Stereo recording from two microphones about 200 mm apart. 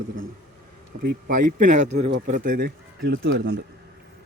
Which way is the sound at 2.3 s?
45° right (ahead or behind).